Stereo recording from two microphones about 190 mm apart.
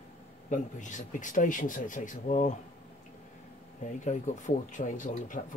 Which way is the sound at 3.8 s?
40° left (ahead or behind).